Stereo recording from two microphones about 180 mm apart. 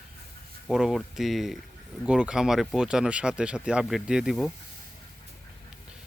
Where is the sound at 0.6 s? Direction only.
Centre (ahead or behind).